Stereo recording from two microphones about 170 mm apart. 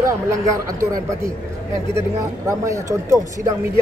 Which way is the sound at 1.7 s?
15° right (ahead or behind).